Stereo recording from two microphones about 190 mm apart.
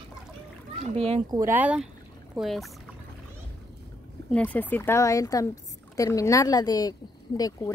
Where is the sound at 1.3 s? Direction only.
10° right (ahead or behind).